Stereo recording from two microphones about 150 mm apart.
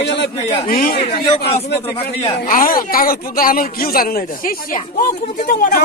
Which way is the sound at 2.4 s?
70° left (ahead or behind).